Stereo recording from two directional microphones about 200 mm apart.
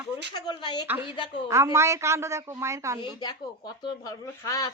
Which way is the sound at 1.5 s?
15° right (ahead or behind).